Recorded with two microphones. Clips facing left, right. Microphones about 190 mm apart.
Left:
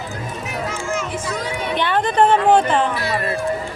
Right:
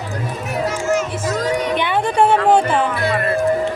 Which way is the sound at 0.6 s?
40° right (ahead or behind).